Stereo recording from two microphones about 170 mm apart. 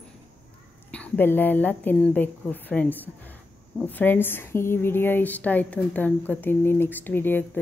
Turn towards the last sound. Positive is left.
turn(degrees=10)  # may be behind; listen again after turning